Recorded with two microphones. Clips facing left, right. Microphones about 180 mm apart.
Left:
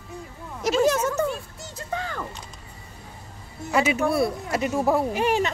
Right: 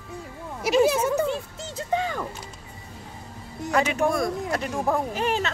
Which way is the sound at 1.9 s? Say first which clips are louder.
Right 5 dB; 15° right (ahead or behind).